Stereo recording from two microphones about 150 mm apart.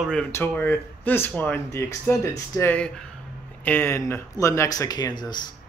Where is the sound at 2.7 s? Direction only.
5° left (ahead or behind); by 5.4 s 25° left (ahead or behind).